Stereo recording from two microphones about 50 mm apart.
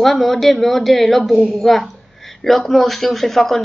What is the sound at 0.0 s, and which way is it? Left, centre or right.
A woman's voice, centre.